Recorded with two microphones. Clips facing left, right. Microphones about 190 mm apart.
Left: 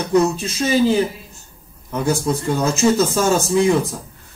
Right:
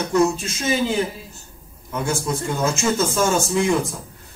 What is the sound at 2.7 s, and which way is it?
Speech, 35° left (ahead or behind).